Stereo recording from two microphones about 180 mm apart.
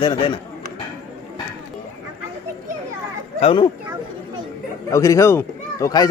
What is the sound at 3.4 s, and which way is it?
Speech, 30° left (ahead or behind).